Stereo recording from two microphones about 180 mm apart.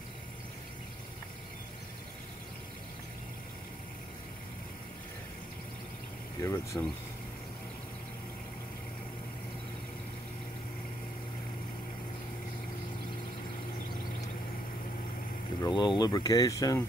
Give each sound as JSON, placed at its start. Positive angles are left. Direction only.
{"t": 6.4, "sound": "speech", "side_deg": 15}
{"t": 15.6, "sound": "speech", "side_deg": 25}